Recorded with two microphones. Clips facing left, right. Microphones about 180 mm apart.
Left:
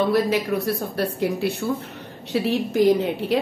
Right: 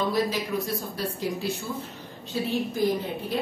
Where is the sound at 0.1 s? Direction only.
65° left (ahead or behind).